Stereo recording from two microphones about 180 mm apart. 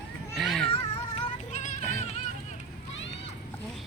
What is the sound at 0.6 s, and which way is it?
Cat, 30° left (ahead or behind).